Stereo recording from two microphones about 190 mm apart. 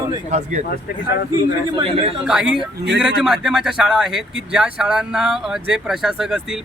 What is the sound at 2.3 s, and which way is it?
Speech, 5° right (ahead or behind).